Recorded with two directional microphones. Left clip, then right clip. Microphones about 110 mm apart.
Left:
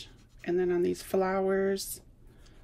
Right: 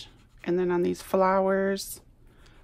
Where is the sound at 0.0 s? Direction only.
40° right (ahead or behind).